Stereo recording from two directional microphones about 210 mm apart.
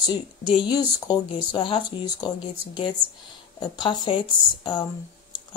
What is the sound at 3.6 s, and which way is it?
Speech, 25° left (ahead or behind).